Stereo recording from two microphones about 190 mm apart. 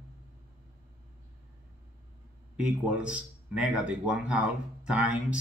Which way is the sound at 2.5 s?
5° right (ahead or behind).